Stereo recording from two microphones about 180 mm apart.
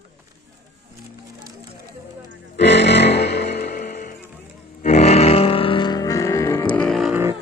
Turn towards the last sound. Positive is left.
turn(degrees=0)  # may be behind; listen again after turning